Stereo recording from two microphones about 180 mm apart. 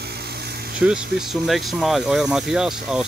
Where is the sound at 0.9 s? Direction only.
Centre (ahead or behind).